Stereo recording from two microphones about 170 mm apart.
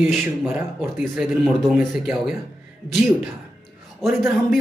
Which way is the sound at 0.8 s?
Centre (ahead or behind).